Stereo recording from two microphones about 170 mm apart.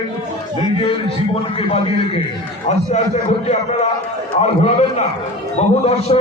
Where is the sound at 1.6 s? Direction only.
35° left (ahead or behind).